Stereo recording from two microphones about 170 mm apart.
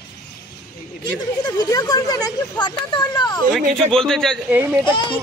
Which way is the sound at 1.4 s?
25° left (ahead or behind).